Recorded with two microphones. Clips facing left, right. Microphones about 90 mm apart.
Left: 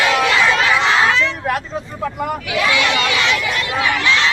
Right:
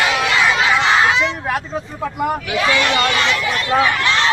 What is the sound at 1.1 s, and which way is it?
Vehicle, 15° right (ahead or behind).